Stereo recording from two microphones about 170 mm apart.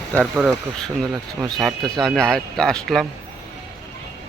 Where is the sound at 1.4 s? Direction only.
Centre (ahead or behind).